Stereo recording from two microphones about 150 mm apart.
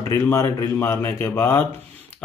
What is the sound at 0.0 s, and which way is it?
Speech, 20° left (ahead or behind).